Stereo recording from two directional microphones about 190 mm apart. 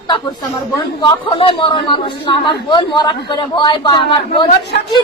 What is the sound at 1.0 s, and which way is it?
A man's voice, 25° left (ahead or behind).